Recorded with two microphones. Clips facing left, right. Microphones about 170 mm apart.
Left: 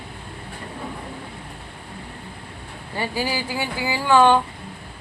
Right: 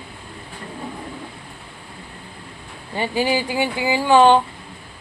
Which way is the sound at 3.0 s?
20° right (ahead or behind).